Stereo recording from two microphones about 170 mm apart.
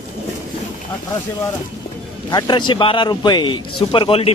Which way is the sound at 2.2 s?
25° left (ahead or behind).